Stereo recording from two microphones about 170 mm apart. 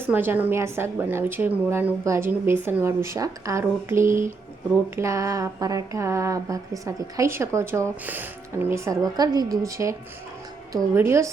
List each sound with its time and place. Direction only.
0.1 s speech: 10° right (ahead or behind)
10.9 s speech: 15° right (ahead or behind)